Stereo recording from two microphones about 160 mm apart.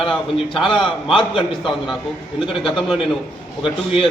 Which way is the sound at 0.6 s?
30° left (ahead or behind).